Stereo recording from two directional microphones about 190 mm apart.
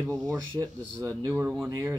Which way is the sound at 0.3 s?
15° right (ahead or behind).